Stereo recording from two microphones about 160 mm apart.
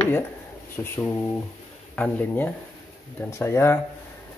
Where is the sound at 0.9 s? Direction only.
15° left (ahead or behind).